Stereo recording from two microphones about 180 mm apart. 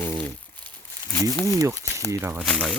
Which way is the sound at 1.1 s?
20° left (ahead or behind).